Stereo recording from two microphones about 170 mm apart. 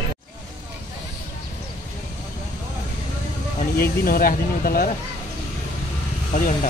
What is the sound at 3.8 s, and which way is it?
Speech, 60° left (ahead or behind).